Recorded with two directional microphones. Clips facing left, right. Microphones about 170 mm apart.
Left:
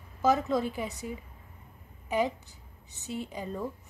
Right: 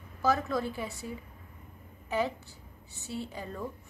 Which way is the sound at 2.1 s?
15° left (ahead or behind).